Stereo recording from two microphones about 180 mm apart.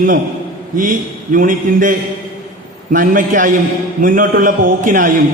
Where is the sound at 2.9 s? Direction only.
50° right (ahead or behind).